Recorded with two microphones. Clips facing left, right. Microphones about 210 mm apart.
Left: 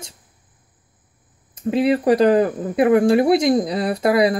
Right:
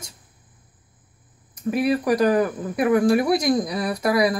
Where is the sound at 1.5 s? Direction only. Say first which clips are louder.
Left 3 dB; 25° left (ahead or behind).